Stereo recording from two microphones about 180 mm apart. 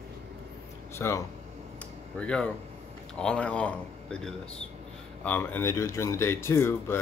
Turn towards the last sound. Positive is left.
turn(degrees=15)  # may be behind; listen again after turning